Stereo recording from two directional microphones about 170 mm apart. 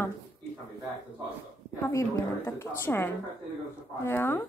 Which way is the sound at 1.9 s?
15° left (ahead or behind).